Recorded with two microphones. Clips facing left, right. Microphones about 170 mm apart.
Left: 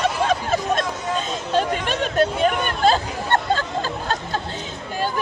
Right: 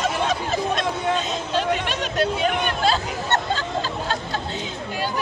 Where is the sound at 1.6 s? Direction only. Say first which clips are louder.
Left 2 dB; 45° left (ahead or behind).